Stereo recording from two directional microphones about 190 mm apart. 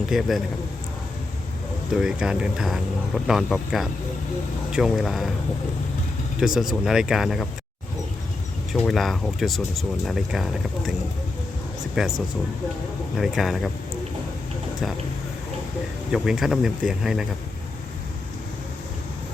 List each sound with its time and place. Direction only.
0.1 s speech: centre (ahead or behind)
1.9 s speech: 5° right (ahead or behind)
6.4 s speech: 5° right (ahead or behind)
8.7 s speech: centre (ahead or behind)
12.0 s speech: centre (ahead or behind)
13.1 s speech: centre (ahead or behind)
16.1 s speech: 5° right (ahead or behind)